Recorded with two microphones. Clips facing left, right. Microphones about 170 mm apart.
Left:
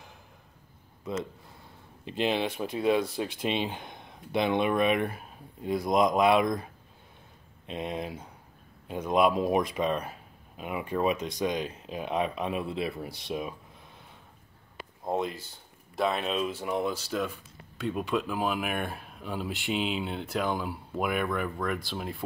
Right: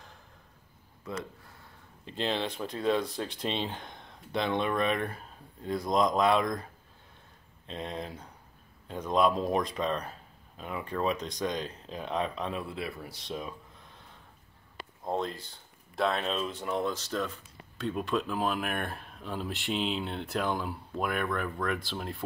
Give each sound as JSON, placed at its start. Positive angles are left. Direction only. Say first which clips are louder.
{"t": 2.0, "sound": "speech", "louder": "left 4 dB", "side_deg": 15}
{"t": 15.0, "sound": "speech", "louder": "left 2 dB", "side_deg": 10}